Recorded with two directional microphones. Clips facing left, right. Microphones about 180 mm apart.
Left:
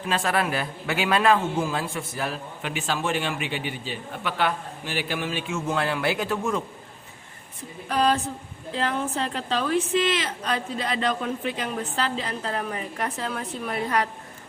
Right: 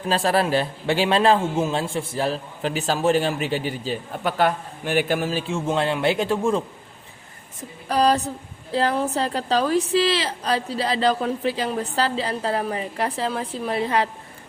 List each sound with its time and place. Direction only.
0.1 s a man's voice: 35° right (ahead or behind)
7.9 s a man's voice: 35° right (ahead or behind)